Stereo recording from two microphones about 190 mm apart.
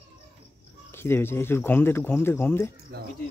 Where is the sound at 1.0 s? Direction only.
10° left (ahead or behind).